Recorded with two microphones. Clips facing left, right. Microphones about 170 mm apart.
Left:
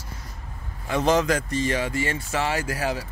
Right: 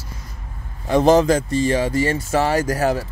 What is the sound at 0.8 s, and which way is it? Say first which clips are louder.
Speech: right 7 dB; 35° right (ahead or behind).